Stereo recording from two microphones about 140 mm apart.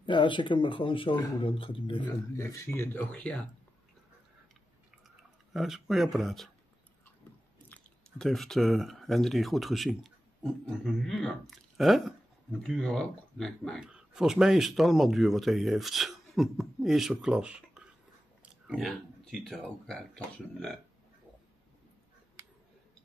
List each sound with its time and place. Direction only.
0.0 s speech: 35° left (ahead or behind)
2.3 s speech: 20° left (ahead or behind)
5.5 s speech: centre (ahead or behind)
7.7 s speech: 5° left (ahead or behind)
18.4 s chewing: 10° right (ahead or behind)
18.9 s speech: centre (ahead or behind)